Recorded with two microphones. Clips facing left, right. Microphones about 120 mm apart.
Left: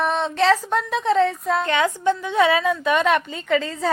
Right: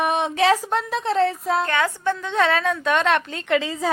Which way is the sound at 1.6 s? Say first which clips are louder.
Left 2 dB; 20° left (ahead or behind).